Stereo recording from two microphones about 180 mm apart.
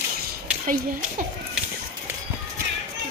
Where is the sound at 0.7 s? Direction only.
50° right (ahead or behind).